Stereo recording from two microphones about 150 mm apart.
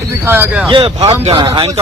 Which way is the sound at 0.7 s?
35° right (ahead or behind).